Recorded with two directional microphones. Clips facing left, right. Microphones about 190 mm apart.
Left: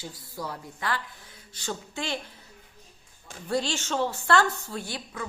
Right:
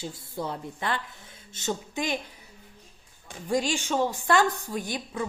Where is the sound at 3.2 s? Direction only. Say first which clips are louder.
Right 2 dB; 15° right (ahead or behind).